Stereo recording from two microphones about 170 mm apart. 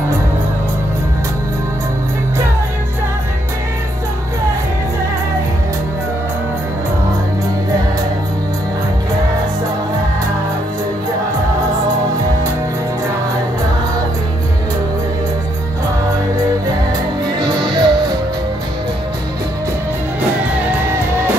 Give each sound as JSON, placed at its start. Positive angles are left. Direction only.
{"t": 17.5, "sound": "music", "side_deg": -25}